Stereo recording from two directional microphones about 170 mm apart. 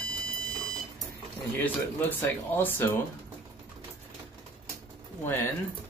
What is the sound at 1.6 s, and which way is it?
Speech, 10° left (ahead or behind).